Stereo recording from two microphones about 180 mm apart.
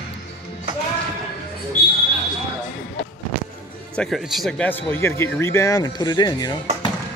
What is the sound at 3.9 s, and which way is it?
Speech, centre (ahead or behind).